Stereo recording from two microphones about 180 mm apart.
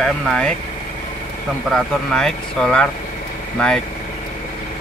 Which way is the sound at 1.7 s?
5° left (ahead or behind).